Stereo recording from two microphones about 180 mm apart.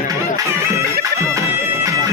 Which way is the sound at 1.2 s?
15° right (ahead or behind).